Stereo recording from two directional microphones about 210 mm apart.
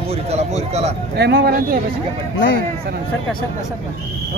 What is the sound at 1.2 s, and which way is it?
Speech, 50° right (ahead or behind).